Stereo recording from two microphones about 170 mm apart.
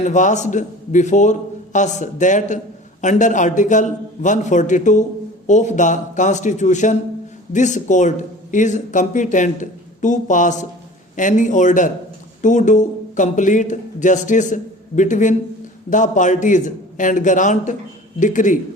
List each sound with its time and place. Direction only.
0.0 s speech: 45° left (ahead or behind)